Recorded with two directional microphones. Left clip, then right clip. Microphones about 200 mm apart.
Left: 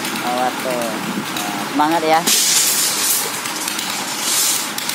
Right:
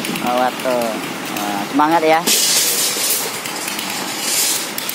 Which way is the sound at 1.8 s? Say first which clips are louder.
Right 2 dB; 35° right (ahead or behind).